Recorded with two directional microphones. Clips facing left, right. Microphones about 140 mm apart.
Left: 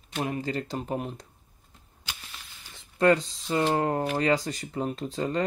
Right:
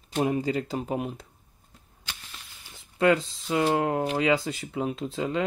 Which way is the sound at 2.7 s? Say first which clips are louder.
Even; 5° right (ahead or behind).